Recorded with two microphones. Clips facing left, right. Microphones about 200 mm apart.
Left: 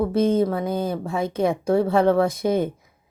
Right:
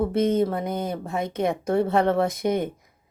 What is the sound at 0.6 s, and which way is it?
Speech, 20° right (ahead or behind).